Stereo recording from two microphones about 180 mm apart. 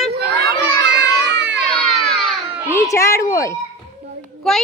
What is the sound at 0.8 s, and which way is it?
Crowd, 70° right (ahead or behind).